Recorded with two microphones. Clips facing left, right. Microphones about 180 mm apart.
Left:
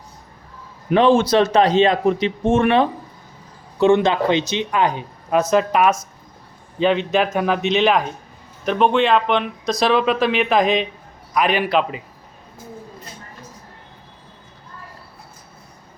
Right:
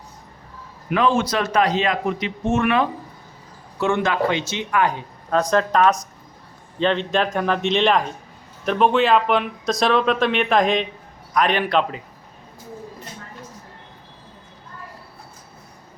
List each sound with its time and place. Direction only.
0.9 s speech: 30° left (ahead or behind); by 12.0 s 5° left (ahead or behind)